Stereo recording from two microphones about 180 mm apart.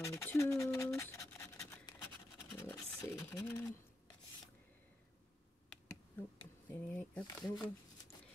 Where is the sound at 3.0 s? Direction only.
15° left (ahead or behind).